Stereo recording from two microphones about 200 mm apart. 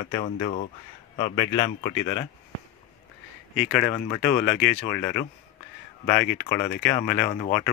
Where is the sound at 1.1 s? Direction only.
25° left (ahead or behind).